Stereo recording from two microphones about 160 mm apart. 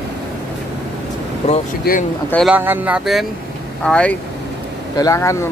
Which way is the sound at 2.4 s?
10° right (ahead or behind).